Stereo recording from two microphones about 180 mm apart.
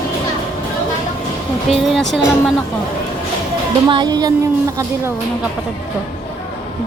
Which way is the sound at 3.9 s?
25° right (ahead or behind).